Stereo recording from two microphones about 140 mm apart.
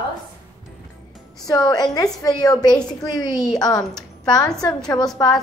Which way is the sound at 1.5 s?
30° left (ahead or behind).